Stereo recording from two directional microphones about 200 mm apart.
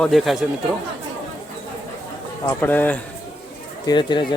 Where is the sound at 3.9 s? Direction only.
20° left (ahead or behind).